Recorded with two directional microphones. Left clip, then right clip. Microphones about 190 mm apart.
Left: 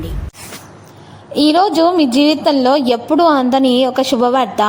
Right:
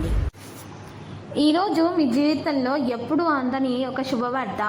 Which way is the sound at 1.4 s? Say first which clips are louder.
Left 9 dB; 30° left (ahead or behind).